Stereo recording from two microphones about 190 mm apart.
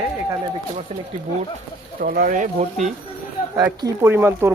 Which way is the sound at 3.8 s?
10° right (ahead or behind).